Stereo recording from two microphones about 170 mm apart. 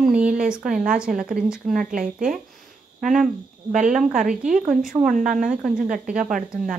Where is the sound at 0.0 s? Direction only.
5° right (ahead or behind).